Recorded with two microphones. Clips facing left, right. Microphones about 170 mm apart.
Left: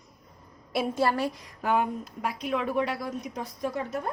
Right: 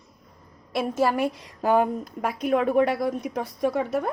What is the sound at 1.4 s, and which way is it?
A woman's voice, 40° right (ahead or behind).